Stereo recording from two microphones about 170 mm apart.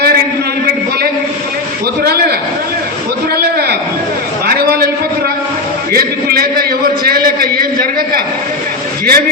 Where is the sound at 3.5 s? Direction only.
65° right (ahead or behind).